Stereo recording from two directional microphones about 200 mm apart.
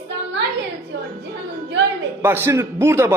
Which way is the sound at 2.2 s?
10° right (ahead or behind).